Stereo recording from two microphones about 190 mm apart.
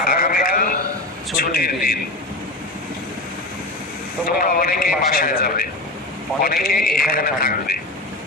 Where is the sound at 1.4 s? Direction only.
50° left (ahead or behind).